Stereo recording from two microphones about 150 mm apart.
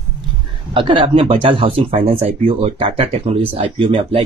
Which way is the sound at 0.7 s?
35° right (ahead or behind).